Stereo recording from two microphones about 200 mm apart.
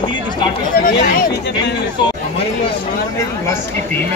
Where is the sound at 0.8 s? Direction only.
45° left (ahead or behind).